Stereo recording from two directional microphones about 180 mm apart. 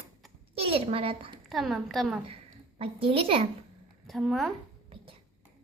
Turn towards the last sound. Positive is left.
turn(degrees=0)  # may be behind; listen again after turning